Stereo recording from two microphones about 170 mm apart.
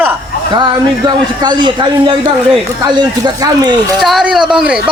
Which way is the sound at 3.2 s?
20° right (ahead or behind).